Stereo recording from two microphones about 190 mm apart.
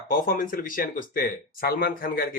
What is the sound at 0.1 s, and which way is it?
Speech, 50° left (ahead or behind).